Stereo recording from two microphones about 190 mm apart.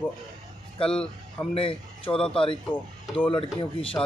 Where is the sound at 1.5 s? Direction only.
30° left (ahead or behind).